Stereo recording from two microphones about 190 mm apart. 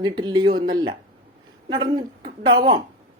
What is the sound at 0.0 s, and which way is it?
Speech, 25° right (ahead or behind).